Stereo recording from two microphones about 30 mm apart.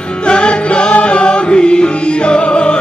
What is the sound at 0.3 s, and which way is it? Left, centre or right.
Music, left.